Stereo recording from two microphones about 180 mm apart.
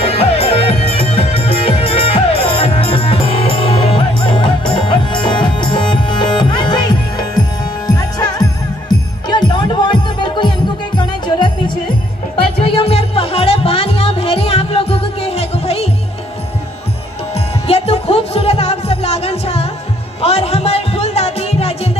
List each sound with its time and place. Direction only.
0.0 s music: 35° left (ahead or behind)
7.8 s jingle bell: 25° left (ahead or behind)
11.0 s music: 25° left (ahead or behind)
17.6 s music: 35° left (ahead or behind)